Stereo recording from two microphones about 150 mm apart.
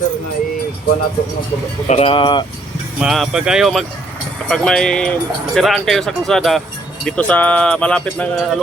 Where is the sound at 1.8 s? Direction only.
40° left (ahead or behind).